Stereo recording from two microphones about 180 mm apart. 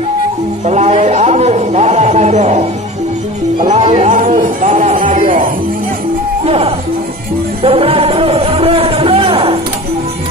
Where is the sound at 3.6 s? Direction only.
40° right (ahead or behind).